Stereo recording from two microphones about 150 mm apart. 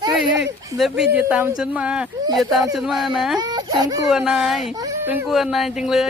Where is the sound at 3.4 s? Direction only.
25° right (ahead or behind).